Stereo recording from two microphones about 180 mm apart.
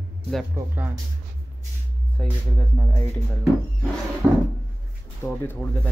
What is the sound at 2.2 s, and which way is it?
Speech, 10° left (ahead or behind).